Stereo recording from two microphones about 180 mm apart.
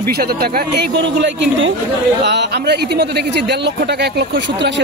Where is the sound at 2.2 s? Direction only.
65° right (ahead or behind).